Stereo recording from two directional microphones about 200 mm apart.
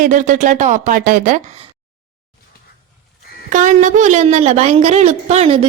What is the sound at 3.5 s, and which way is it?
A woman's voice, 40° right (ahead or behind).